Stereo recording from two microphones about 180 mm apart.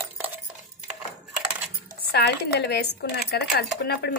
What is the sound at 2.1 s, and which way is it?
Speech, 65° left (ahead or behind).